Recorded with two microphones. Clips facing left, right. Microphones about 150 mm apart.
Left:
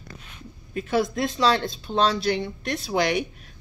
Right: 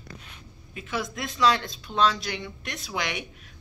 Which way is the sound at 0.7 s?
35° left (ahead or behind).